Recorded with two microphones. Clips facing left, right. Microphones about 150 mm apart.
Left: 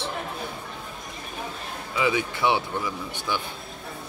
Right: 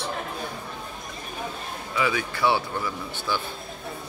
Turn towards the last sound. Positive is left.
turn(degrees=15)  # may be behind; listen again after turning